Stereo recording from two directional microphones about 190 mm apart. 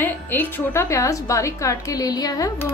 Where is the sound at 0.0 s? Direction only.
10° left (ahead or behind).